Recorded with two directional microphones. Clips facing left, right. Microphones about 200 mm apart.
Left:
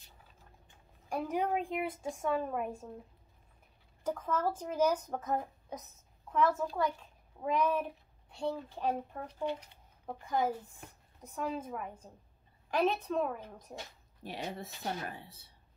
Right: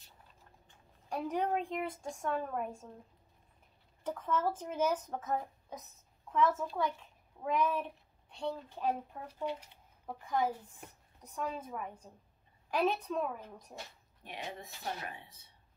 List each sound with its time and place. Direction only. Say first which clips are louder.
1.1 s a woman's voice: left 1 dB; 5° left (ahead or behind)
4.0 s speech: left 1 dB; centre (ahead or behind)
14.2 s speech: left 4 dB; 35° left (ahead or behind)